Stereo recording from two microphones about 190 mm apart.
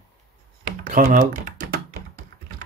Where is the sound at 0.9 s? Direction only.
40° right (ahead or behind).